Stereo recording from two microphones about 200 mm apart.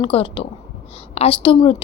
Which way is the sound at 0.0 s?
25° left (ahead or behind).